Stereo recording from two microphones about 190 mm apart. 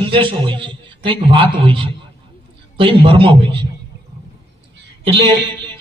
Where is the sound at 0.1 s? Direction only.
25° right (ahead or behind).